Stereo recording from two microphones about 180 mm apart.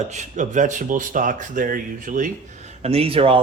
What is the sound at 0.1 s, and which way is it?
Speech, 40° right (ahead or behind).